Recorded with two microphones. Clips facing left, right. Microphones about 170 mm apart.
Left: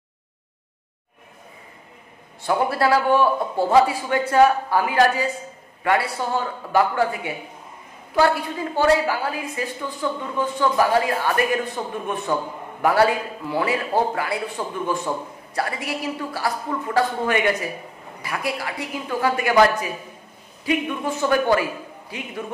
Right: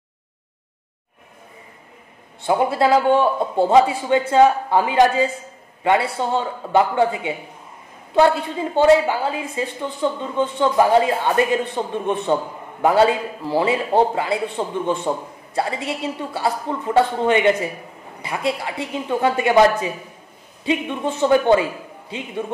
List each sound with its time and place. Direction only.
2.4 s a man's voice: 20° right (ahead or behind)